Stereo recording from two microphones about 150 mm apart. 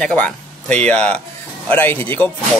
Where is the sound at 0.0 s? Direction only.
10° left (ahead or behind).